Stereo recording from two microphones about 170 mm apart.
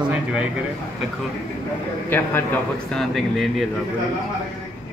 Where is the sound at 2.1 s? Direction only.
10° left (ahead or behind).